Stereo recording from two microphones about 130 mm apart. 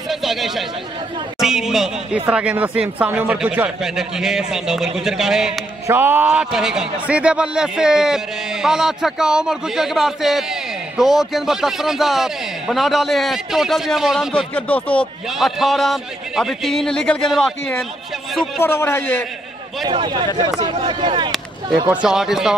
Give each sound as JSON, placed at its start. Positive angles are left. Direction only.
{"t": 0.1, "sound": "a sound", "side_deg": 0}
{"t": 1.4, "sound": "a man's voice", "side_deg": -5}
{"t": 5.9, "sound": "a man's voice", "side_deg": -15}
{"t": 14.5, "sound": "speech", "side_deg": 10}
{"t": 15.2, "sound": "a man's voice", "side_deg": 0}
{"t": 18.6, "sound": "a man's voice", "side_deg": 20}
{"t": 19.9, "sound": "speech", "side_deg": -40}
{"t": 21.8, "sound": "a man's voice", "side_deg": -5}